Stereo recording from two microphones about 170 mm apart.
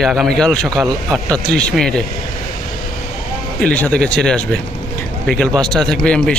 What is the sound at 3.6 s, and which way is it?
A man's voice, 10° left (ahead or behind).